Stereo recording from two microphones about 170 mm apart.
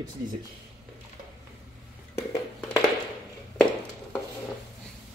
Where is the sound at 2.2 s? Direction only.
15° left (ahead or behind).